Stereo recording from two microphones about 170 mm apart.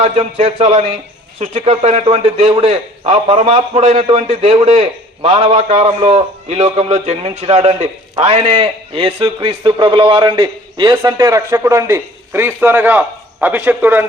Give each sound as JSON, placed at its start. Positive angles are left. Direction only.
{"t": 0.0, "sound": "a man's voice", "side_deg": -35}